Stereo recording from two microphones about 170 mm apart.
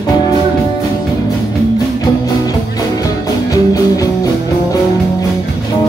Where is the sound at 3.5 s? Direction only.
20° left (ahead or behind).